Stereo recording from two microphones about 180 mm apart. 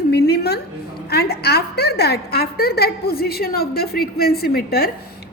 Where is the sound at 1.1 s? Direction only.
65° left (ahead or behind).